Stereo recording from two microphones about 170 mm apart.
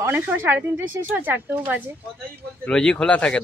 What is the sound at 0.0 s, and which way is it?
Speech, 10° right (ahead or behind).